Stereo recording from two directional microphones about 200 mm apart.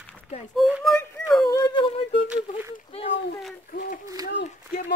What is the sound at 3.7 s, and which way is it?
Speech, 45° left (ahead or behind).